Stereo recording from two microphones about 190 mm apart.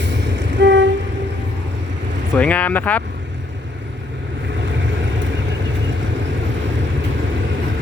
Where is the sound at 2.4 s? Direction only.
5° left (ahead or behind).